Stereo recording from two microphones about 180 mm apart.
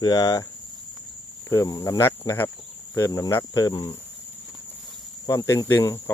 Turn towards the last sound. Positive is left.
turn(degrees=15)  # may be behind; listen again after turning